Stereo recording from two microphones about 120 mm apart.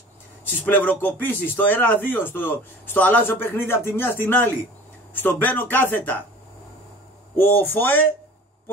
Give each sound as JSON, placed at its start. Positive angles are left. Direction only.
{"t": 0.7, "sound": "speech", "side_deg": 15}
{"t": 7.3, "sound": "speech", "side_deg": 15}